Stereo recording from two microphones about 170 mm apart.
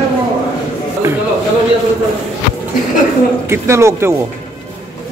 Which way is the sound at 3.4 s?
15° right (ahead or behind).